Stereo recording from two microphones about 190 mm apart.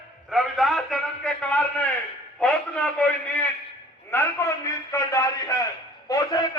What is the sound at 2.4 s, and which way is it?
A man's voice, 5° left (ahead or behind).